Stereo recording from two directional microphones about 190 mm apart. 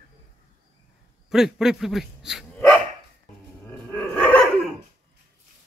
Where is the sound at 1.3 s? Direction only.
Centre (ahead or behind).